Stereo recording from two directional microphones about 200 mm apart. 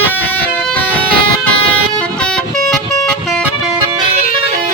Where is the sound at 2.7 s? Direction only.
Centre (ahead or behind).